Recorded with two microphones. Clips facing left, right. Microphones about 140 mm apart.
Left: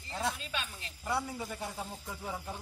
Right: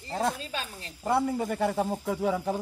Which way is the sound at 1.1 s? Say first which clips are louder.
Right 9 dB; 55° right (ahead or behind).